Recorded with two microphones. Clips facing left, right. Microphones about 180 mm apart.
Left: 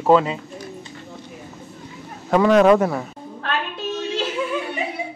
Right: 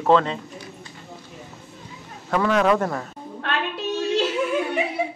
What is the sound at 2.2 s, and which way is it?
Speech, 15° left (ahead or behind).